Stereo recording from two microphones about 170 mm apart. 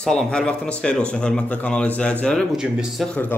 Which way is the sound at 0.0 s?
5° left (ahead or behind).